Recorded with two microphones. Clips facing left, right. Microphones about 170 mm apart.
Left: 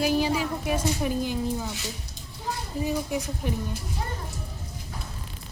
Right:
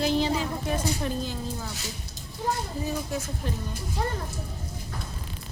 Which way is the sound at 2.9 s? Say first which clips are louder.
Left 5 dB; 15° left (ahead or behind).